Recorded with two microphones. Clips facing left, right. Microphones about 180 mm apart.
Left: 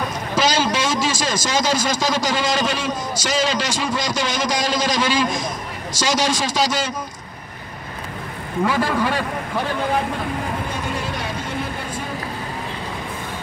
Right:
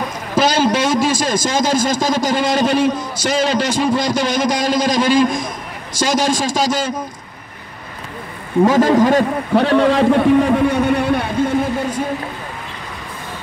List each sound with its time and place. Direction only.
0.4 s a man's voice: 55° right (ahead or behind)
8.6 s a man's voice: 40° right (ahead or behind)
9.6 s a man's voice: 75° right (ahead or behind); by 11.5 s 55° right (ahead or behind)